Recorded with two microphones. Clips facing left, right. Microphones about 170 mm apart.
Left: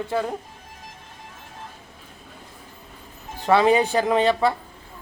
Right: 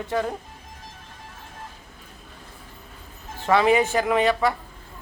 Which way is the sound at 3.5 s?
30° left (ahead or behind).